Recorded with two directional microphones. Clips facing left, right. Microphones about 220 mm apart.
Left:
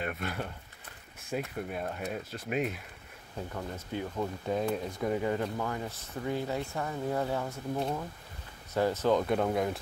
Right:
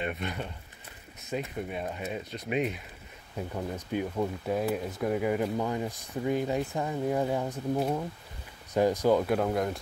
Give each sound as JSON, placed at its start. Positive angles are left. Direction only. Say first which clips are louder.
{"t": 0.0, "sound": "speech", "louder": "right 2 dB", "side_deg": 5}
{"t": 3.3, "sound": "speech", "louder": "right 4 dB", "side_deg": -15}